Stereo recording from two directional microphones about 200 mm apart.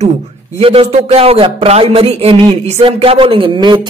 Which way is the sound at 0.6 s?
30° right (ahead or behind).